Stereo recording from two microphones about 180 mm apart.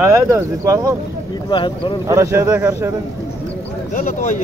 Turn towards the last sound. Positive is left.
turn(degrees=45)  # may be behind; listen again after turning